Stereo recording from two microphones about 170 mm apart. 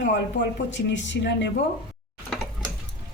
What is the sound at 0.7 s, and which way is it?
Speech, 90° left.